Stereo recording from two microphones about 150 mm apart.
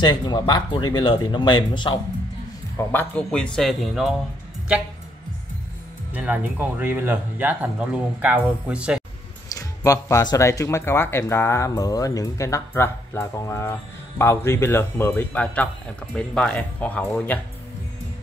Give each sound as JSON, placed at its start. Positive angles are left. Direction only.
{"t": 0.0, "sound": "speech", "side_deg": 30}
{"t": 2.9, "sound": "a man's voice", "side_deg": 10}
{"t": 6.1, "sound": "speech", "side_deg": -10}
{"t": 9.5, "sound": "speech", "side_deg": 20}